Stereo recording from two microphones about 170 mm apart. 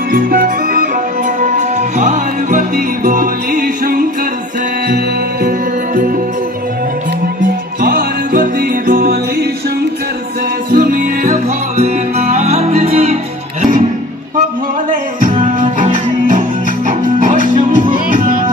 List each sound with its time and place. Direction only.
0.1 s music: 60° right (ahead or behind)
1.6 s music: 45° right (ahead or behind); by 5.5 s 60° right (ahead or behind)
7.8 s music: 60° right (ahead or behind)
10.7 s music: 50° right (ahead or behind)
14.9 s music: 55° right (ahead or behind)